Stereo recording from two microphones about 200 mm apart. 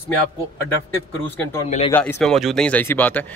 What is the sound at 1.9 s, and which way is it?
Speech, 10° left (ahead or behind).